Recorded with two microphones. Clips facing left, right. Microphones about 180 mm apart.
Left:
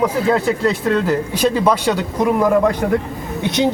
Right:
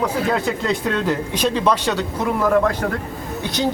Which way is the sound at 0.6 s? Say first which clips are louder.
Left 4 dB; 5° left (ahead or behind).